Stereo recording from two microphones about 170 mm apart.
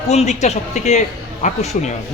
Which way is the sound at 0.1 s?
40° left (ahead or behind).